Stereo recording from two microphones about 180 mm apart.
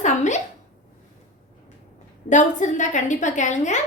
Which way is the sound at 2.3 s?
45° left (ahead or behind).